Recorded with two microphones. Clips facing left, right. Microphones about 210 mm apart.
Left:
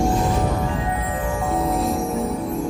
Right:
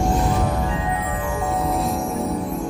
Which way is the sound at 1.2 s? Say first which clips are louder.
Left 2 dB; centre (ahead or behind).